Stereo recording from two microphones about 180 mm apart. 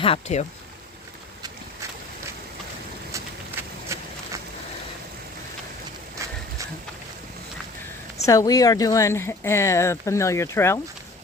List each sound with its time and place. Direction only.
0.0 s speech: 35° left (ahead or behind)
3.1 s a sound: 15° right (ahead or behind)
8.3 s speech: 20° left (ahead or behind)